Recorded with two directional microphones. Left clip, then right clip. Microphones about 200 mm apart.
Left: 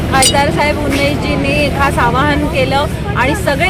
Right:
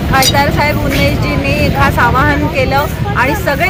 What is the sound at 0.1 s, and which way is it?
Speech, centre (ahead or behind).